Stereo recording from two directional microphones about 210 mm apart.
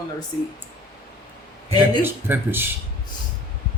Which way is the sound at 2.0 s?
10° right (ahead or behind).